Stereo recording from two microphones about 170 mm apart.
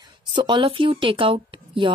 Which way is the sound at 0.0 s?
25° right (ahead or behind).